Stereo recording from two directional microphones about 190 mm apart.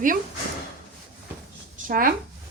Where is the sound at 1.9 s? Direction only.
50° right (ahead or behind).